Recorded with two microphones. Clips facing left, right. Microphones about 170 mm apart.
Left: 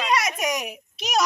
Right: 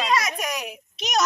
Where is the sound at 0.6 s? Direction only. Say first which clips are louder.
Even; 5° left (ahead or behind).